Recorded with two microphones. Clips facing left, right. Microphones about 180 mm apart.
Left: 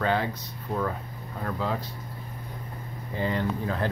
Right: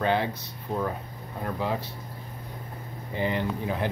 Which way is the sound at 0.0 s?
20° right (ahead or behind).